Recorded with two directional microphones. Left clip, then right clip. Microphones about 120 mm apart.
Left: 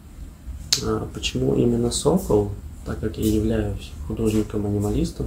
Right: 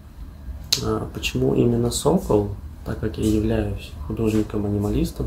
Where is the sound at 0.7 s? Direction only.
20° right (ahead or behind).